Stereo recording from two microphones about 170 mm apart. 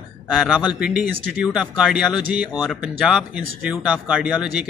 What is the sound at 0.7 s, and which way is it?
Speech, 5° right (ahead or behind).